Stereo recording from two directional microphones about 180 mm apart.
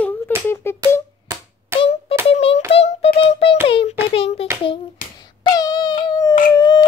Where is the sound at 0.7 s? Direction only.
15° left (ahead or behind).